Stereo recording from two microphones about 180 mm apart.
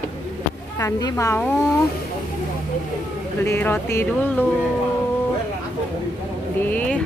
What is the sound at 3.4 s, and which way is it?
Speech, 10° left (ahead or behind).